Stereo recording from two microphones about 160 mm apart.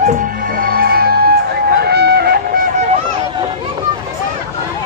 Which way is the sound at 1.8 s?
90° right.